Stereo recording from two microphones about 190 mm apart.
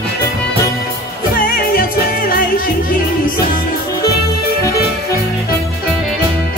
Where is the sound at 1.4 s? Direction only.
50° left (ahead or behind).